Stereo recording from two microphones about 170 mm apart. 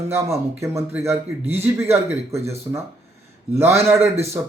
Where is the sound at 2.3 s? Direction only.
40° right (ahead or behind).